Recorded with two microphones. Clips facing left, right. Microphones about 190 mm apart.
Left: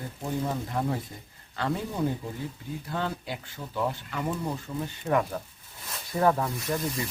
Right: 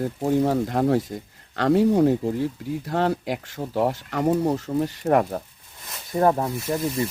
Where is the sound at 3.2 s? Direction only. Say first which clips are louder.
Right 9 dB; 90° right.